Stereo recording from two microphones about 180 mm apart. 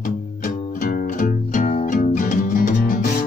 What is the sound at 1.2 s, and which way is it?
Music, 45° left (ahead or behind).